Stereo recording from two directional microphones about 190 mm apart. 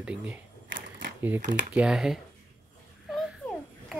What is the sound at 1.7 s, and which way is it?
Speech, 5° right (ahead or behind).